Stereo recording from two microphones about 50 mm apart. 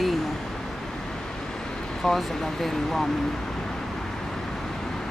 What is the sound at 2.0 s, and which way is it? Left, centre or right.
Speech, centre.